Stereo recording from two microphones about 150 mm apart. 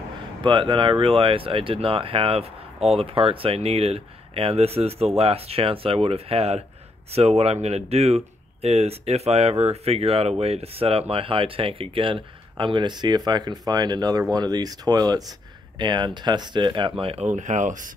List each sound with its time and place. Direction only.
0.4 s speech: 35° right (ahead or behind)
17.0 s speech: 45° right (ahead or behind)